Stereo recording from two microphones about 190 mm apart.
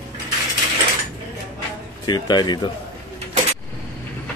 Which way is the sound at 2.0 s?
20° left (ahead or behind).